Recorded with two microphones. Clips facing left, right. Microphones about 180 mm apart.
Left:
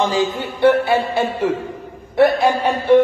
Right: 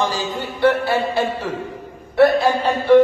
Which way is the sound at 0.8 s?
55° left (ahead or behind).